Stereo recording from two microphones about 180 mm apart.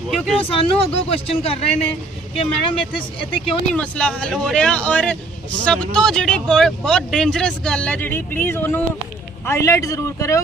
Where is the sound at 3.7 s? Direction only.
5° left (ahead or behind).